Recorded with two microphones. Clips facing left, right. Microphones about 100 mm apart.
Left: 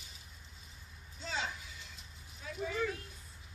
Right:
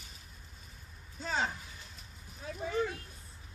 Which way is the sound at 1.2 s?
45° right (ahead or behind).